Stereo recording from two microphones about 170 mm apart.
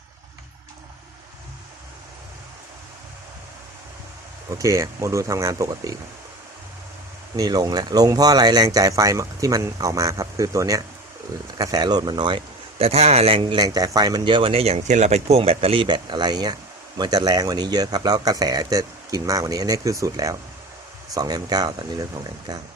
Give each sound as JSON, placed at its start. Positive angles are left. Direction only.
{"t": 4.4, "sound": "speech", "side_deg": -20}
{"t": 7.3, "sound": "speech", "side_deg": -20}
{"t": 12.8, "sound": "speech", "side_deg": -40}